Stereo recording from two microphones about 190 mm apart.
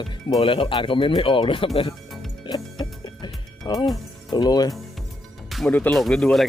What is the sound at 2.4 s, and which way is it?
Music, 25° left (ahead or behind).